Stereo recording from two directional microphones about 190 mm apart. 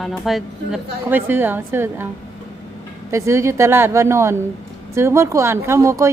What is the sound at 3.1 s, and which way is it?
Speech, 15° right (ahead or behind).